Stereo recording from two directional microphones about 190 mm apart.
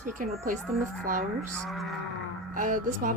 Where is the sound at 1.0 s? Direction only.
45° right (ahead or behind).